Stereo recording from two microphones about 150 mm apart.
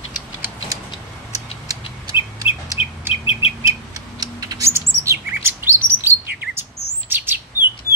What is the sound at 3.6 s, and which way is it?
Rodents, 25° right (ahead or behind).